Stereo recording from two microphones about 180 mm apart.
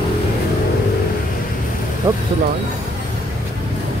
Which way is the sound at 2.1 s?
20° right (ahead or behind).